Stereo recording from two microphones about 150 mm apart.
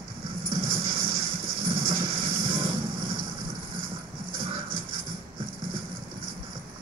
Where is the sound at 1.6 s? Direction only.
70° right (ahead or behind).